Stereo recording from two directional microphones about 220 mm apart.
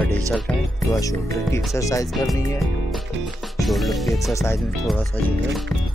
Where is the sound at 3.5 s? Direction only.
Centre (ahead or behind).